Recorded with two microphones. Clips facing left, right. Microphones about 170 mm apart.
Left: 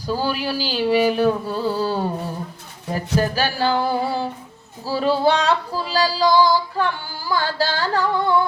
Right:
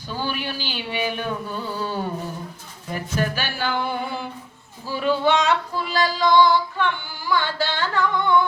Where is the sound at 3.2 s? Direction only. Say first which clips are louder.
Left 5 dB; 35° left (ahead or behind).